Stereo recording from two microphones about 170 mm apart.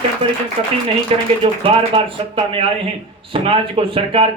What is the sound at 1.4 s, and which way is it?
Speech, 35° right (ahead or behind).